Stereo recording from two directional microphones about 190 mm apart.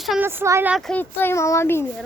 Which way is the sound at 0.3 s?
15° right (ahead or behind).